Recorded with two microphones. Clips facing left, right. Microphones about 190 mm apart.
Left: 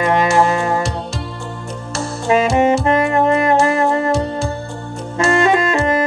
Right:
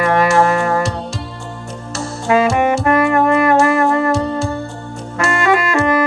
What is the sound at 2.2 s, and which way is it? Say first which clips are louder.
Saxophone: even; 20° left (ahead or behind).